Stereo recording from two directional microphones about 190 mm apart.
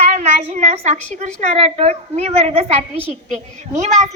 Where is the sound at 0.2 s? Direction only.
40° right (ahead or behind).